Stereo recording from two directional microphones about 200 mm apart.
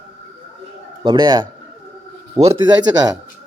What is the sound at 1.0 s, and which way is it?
A man's voice, 20° right (ahead or behind).